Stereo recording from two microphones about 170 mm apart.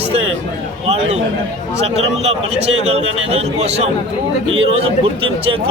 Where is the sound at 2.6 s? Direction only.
35° right (ahead or behind).